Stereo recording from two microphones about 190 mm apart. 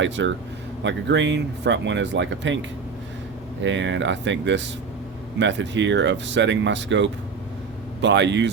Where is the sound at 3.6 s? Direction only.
70° right (ahead or behind).